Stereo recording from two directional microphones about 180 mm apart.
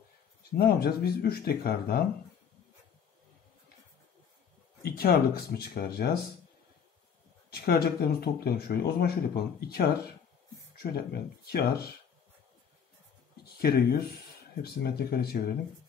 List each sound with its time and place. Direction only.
0.4 s speech: 60° left (ahead or behind)
4.8 s speech: 60° left (ahead or behind)
7.5 s speech: 60° left (ahead or behind)
11.4 s speech: 60° left (ahead or behind)
13.6 s speech: 60° left (ahead or behind)